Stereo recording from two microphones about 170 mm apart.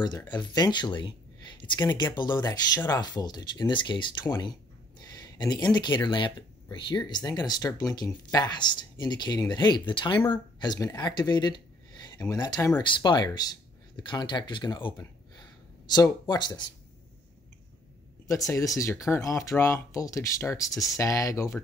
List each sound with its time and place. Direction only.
0.0 s speech: 25° left (ahead or behind)
18.5 s speech: 20° left (ahead or behind)